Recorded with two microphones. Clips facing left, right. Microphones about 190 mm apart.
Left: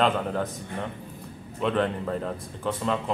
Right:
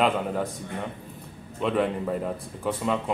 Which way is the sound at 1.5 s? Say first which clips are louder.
Right 1 dB; 5° right (ahead or behind).